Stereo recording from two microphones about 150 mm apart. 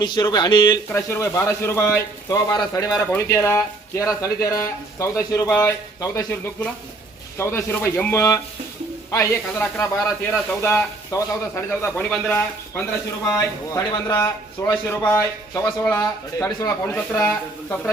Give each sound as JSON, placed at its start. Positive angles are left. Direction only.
{"t": 0.0, "sound": "speech", "side_deg": 30}
{"t": 0.9, "sound": "a man's voice", "side_deg": 15}
{"t": 7.3, "sound": "a man's voice", "side_deg": 15}
{"t": 13.2, "sound": "a man's voice", "side_deg": 20}